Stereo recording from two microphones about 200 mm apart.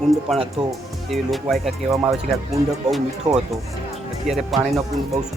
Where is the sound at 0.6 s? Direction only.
25° right (ahead or behind).